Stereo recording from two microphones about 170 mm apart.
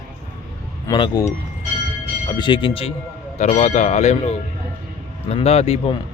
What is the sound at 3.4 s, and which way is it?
Speech, 45° left (ahead or behind).